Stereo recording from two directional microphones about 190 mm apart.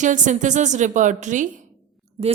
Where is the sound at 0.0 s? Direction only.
40° right (ahead or behind).